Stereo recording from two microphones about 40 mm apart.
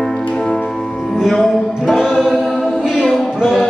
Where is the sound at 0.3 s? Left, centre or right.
Centre.